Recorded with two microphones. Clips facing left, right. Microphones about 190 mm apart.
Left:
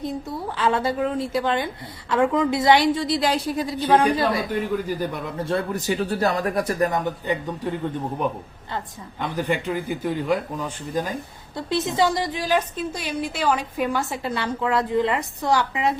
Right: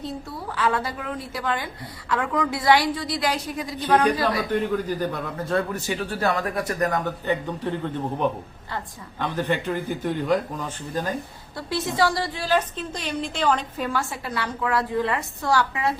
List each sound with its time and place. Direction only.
0.0 s a woman's voice: 20° left (ahead or behind)
4.9 s a man's voice: 10° left (ahead or behind)
5.5 s speech: 35° left (ahead or behind)
6.9 s a man's voice: 15° left (ahead or behind)
9.2 s a man's voice: 10° left (ahead or behind)